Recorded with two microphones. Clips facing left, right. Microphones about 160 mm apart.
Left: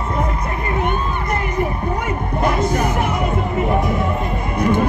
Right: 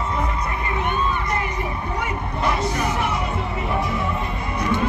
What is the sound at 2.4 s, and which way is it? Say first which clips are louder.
Music: left 5 dB; 50° left (ahead or behind).